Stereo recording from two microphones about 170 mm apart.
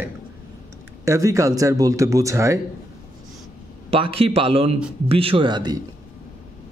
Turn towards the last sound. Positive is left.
turn(degrees=-25)  # may be behind; listen again after turning